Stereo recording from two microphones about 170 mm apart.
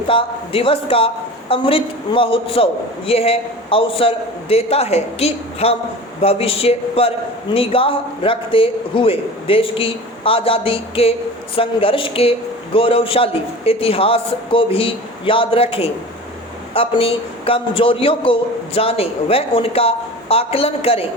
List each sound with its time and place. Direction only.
0.1 s a man's voice: 30° left (ahead or behind)